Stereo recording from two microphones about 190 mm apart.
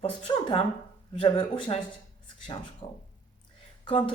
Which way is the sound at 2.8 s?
25° left (ahead or behind).